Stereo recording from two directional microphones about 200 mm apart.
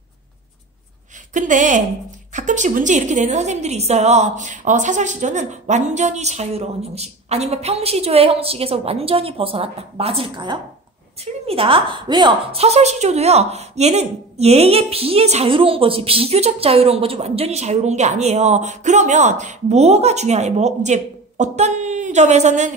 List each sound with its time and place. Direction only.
1.3 s a woman's voice: 40° right (ahead or behind)